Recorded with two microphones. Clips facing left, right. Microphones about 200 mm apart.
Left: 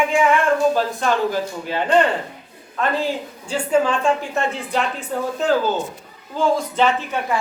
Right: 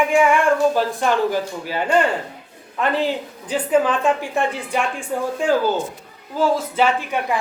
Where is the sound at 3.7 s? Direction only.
5° right (ahead or behind).